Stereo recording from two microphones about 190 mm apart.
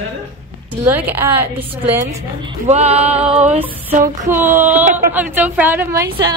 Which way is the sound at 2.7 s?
35° right (ahead or behind).